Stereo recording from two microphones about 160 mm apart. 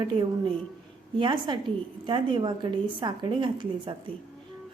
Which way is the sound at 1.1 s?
30° right (ahead or behind).